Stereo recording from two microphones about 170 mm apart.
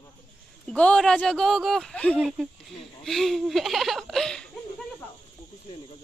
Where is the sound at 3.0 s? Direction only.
Centre (ahead or behind).